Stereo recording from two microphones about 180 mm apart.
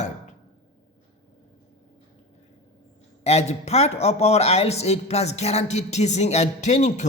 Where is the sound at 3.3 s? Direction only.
35° left (ahead or behind).